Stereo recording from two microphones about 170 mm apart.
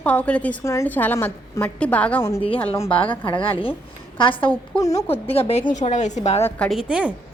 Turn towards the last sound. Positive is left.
turn(degrees=-5)  # may be behind; listen again after turning